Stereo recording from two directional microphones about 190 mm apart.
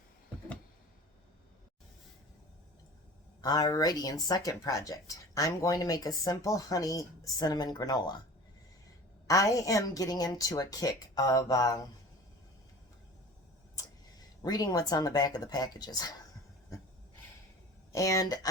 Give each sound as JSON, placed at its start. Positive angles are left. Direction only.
{"t": 3.4, "sound": "speech", "side_deg": 20}
{"t": 9.2, "sound": "speech", "side_deg": 15}
{"t": 13.7, "sound": "speech", "side_deg": 20}
{"t": 17.9, "sound": "speech", "side_deg": 15}